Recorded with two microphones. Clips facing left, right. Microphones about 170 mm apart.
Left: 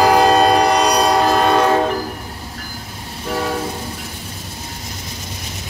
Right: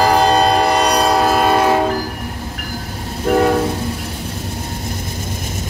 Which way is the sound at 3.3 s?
55° right (ahead or behind).